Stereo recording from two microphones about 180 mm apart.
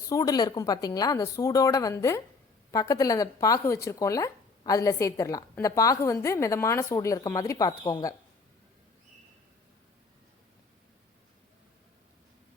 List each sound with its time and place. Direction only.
0.0 s speech: 20° left (ahead or behind)